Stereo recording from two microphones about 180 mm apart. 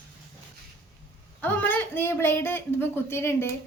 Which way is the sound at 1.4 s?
10° left (ahead or behind).